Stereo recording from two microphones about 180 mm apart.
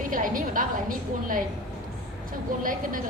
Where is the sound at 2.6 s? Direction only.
50° right (ahead or behind).